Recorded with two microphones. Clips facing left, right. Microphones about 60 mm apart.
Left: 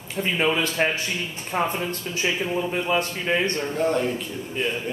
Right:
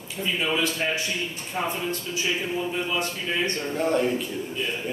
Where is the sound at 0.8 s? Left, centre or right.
Left.